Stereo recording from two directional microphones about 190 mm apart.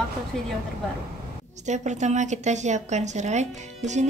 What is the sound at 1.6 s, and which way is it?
A woman's voice, 40° right (ahead or behind).